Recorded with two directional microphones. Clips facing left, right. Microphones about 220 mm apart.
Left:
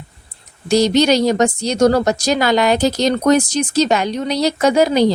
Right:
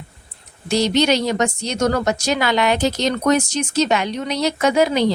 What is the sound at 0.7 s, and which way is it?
Speech, 40° left (ahead or behind).